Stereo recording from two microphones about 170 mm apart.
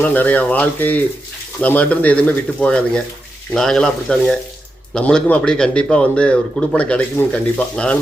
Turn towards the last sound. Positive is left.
turn(degrees=5)  # may be behind; listen again after turning